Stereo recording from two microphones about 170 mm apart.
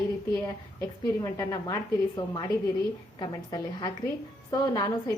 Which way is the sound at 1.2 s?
20° left (ahead or behind).